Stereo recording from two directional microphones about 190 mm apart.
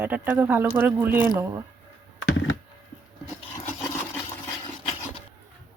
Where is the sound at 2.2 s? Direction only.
90° left.